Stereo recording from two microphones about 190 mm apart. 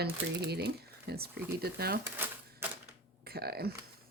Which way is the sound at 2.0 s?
10° right (ahead or behind).